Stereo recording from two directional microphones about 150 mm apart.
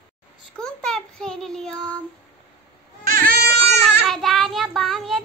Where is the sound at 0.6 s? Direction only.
5° left (ahead or behind).